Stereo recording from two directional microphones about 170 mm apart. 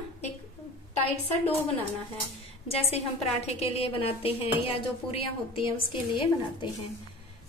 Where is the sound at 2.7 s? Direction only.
35° left (ahead or behind).